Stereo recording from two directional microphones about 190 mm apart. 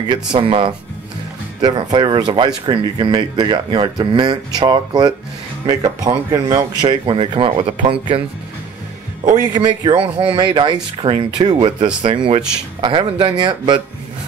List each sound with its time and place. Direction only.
0.1 s speech: 25° right (ahead or behind)
9.5 s speech: 25° right (ahead or behind)